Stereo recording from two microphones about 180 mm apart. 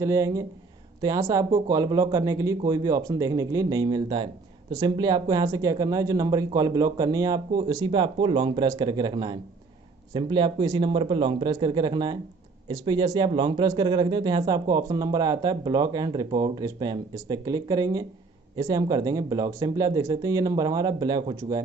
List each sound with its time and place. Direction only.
0.0 s speech: 15° right (ahead or behind)